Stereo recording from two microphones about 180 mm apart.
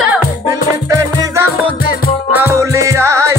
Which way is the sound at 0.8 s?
15° right (ahead or behind).